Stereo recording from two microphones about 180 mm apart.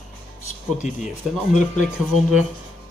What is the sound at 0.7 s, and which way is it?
Speech, 40° left (ahead or behind).